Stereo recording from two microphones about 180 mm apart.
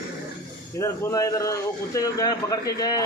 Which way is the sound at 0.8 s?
20° left (ahead or behind).